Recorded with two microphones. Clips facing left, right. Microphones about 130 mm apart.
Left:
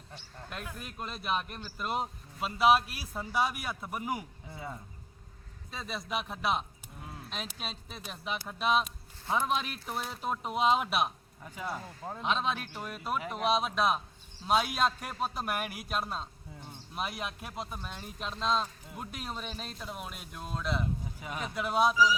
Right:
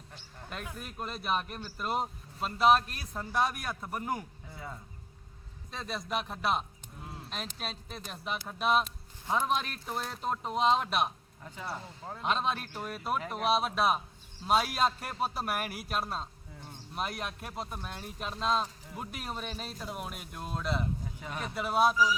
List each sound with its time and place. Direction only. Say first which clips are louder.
0.5 s speech: right 1 dB; centre (ahead or behind)
4.5 s speech: left 2 dB; 15° left (ahead or behind)
5.7 s speech: right 1 dB; centre (ahead or behind)
12.2 s speech: right 1 dB; centre (ahead or behind)